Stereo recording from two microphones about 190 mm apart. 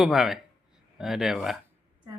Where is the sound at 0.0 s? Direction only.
Centre (ahead or behind).